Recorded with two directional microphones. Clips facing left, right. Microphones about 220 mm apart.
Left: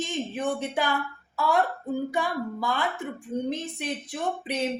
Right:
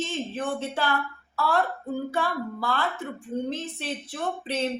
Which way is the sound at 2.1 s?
15° left (ahead or behind).